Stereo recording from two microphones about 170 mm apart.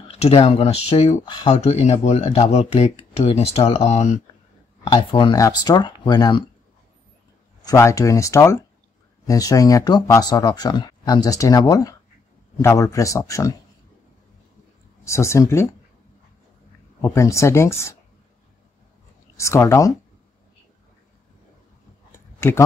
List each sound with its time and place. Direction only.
0.1 s speech: 35° left (ahead or behind)
1.5 s speech: 40° left (ahead or behind)
4.9 s speech: 25° left (ahead or behind)
7.6 s speech: 20° left (ahead or behind)
15.0 s speech: 15° left (ahead or behind)
17.0 s speech: 15° left (ahead or behind)
19.3 s speech: 15° left (ahead or behind)
22.4 s speech: 15° left (ahead or behind)